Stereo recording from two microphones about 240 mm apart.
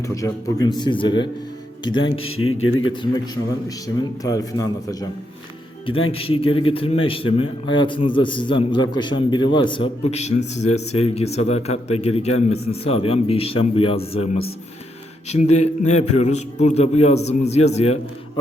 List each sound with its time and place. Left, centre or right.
0.0 s a man's voice: centre
2.3 s a man's voice: left
3.8 s speech: centre
6.1 s a man's voice: left
15.3 s a man's voice: left